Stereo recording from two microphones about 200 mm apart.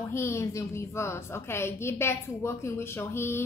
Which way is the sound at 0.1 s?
15° left (ahead or behind).